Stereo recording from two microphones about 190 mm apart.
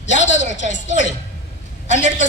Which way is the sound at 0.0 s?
70° left (ahead or behind).